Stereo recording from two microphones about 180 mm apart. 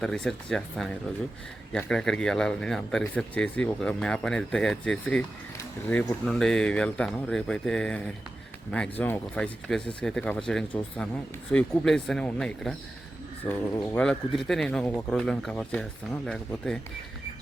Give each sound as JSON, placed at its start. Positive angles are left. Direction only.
{"t": 0.0, "sound": "speech", "side_deg": 5}